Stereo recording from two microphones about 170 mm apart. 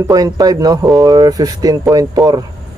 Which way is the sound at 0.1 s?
20° right (ahead or behind).